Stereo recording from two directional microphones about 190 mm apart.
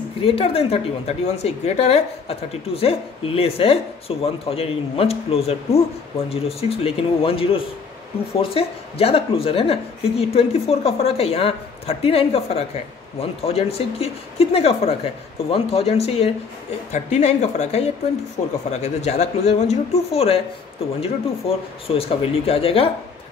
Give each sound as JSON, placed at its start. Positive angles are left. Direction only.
{"t": 0.2, "sound": "a woman's voice", "side_deg": 30}